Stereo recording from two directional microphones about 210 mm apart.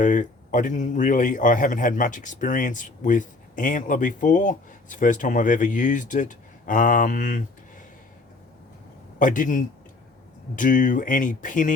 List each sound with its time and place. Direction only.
0.0 s a man's voice: 35° left (ahead or behind)
9.1 s a man's voice: 40° left (ahead or behind)